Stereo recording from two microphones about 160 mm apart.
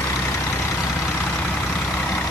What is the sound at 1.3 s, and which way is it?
Vehicle, 10° left (ahead or behind).